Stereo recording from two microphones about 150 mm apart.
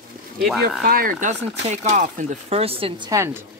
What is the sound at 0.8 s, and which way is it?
Speech, 75° right (ahead or behind).